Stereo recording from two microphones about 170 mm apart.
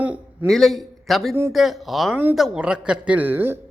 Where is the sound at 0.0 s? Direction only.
10° right (ahead or behind).